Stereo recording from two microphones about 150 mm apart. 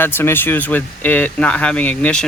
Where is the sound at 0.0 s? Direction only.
15° left (ahead or behind).